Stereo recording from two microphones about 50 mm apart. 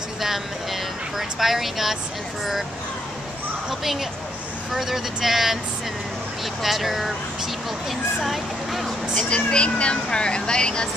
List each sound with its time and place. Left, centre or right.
0.2 s speech: centre
3.8 s speech: centre
6.6 s speech: centre
9.3 s speech: centre